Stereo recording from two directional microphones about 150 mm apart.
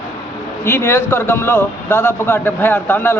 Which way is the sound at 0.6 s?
15° left (ahead or behind).